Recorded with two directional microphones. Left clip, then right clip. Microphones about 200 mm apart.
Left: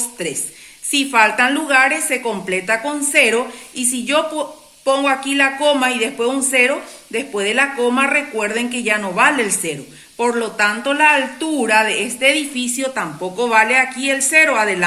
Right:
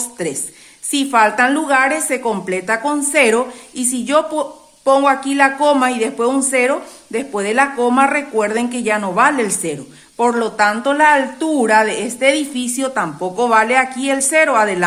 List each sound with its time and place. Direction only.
0.9 s speech: 50° right (ahead or behind)